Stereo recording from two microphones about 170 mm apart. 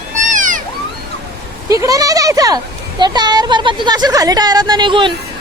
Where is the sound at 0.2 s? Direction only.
50° right (ahead or behind).